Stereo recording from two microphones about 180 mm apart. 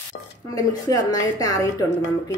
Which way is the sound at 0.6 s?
20° left (ahead or behind).